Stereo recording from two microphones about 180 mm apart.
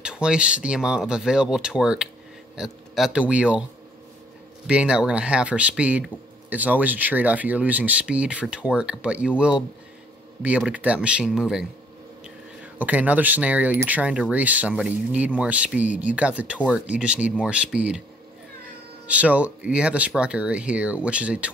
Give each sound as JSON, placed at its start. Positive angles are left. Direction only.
{"t": 0.0, "sound": "speech", "side_deg": -5}
{"t": 4.6, "sound": "speech", "side_deg": -5}
{"t": 10.4, "sound": "speech", "side_deg": -10}
{"t": 12.7, "sound": "speech", "side_deg": -10}
{"t": 19.0, "sound": "speech", "side_deg": -10}